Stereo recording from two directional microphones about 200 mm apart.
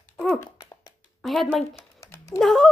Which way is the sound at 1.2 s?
Centre (ahead or behind).